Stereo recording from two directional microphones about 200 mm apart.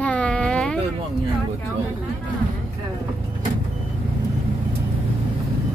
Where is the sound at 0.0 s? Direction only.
5° left (ahead or behind).